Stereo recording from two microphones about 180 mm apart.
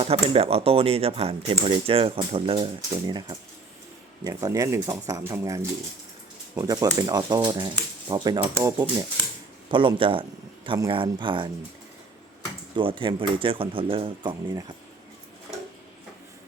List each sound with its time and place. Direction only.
0.0 s speech: 35° right (ahead or behind); by 5.5 s 15° right (ahead or behind)
6.6 s speech: 20° right (ahead or behind)
12.7 s speech: 30° right (ahead or behind)